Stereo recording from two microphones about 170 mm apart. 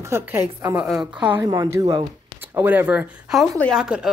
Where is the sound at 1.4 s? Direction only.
20° right (ahead or behind).